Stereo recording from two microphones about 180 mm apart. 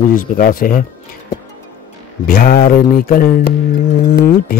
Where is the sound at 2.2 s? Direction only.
55° left (ahead or behind).